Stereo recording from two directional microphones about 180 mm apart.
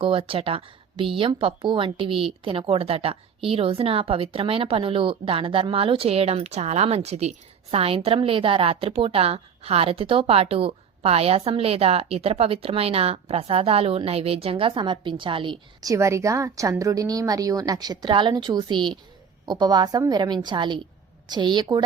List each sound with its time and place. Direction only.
0.0 s a woman's voice: 30° right (ahead or behind)